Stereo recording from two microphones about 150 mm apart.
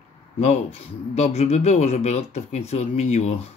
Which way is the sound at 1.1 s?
45° left (ahead or behind).